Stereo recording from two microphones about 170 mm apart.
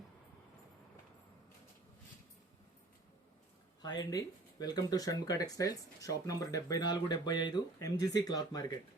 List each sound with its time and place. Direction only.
3.8 s speech: 20° left (ahead or behind)